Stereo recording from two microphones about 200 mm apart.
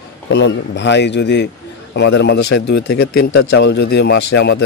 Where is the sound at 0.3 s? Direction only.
60° left (ahead or behind).